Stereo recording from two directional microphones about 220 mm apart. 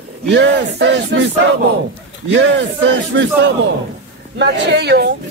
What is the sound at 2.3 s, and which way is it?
A man's voice, 55° right (ahead or behind).